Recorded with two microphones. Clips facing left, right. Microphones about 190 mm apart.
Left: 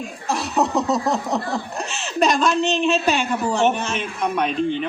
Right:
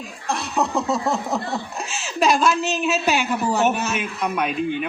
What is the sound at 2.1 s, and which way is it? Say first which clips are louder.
A woman's voice: even; 5° right (ahead or behind).